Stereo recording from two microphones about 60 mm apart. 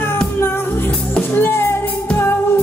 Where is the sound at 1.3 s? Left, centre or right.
Left.